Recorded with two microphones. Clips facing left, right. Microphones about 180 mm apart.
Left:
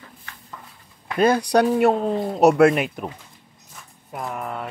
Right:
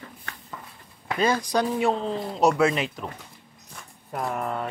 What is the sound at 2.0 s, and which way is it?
Speech, 50° left (ahead or behind).